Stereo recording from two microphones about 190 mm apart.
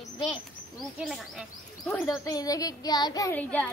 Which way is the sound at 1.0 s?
Centre (ahead or behind).